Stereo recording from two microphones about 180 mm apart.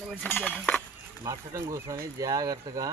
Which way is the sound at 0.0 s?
10° left (ahead or behind).